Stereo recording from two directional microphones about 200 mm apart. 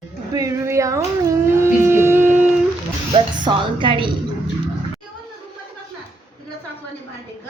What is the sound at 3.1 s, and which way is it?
Speech, 25° right (ahead or behind).